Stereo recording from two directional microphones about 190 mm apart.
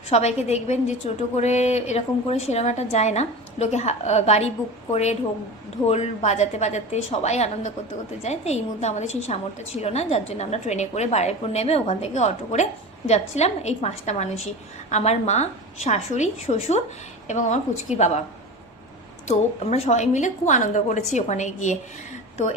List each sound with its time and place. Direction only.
0.1 s a woman's voice: 35° left (ahead or behind)
19.3 s a woman's voice: 35° left (ahead or behind)